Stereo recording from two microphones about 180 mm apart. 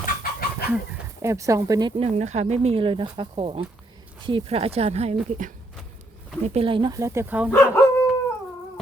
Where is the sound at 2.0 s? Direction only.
40° right (ahead or behind).